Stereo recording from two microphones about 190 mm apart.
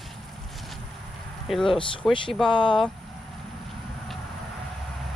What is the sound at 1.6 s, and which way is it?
Speech, 25° left (ahead or behind).